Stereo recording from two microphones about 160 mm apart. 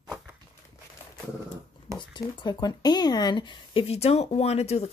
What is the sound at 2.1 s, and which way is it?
Speech, 25° left (ahead or behind).